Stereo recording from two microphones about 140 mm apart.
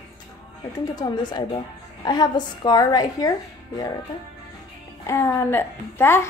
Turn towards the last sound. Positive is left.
turn(degrees=15)  # may be behind; listen again after turning